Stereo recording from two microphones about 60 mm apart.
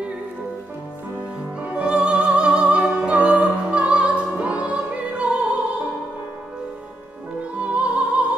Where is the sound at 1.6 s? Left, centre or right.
Centre.